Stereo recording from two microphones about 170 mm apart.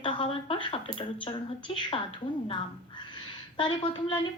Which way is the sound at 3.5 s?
30° left (ahead or behind).